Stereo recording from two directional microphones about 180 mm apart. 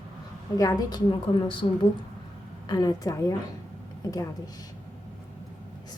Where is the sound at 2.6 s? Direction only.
20° left (ahead or behind).